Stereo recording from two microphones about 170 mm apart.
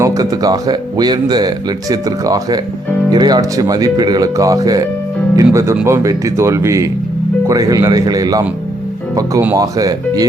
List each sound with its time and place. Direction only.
0.0 s speech: 20° right (ahead or behind)